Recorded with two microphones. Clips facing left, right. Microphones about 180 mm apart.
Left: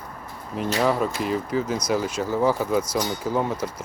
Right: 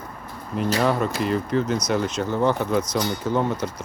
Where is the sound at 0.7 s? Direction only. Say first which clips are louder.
Left 1 dB; 5° left (ahead or behind).